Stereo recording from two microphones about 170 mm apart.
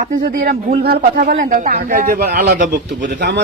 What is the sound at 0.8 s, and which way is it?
Speech, 65° right (ahead or behind).